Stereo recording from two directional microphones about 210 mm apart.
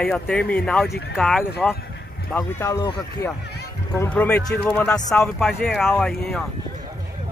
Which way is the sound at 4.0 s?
5° left (ahead or behind).